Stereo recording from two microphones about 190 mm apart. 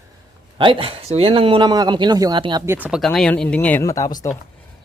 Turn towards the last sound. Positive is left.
turn(degrees=20)  # may be behind; listen again after turning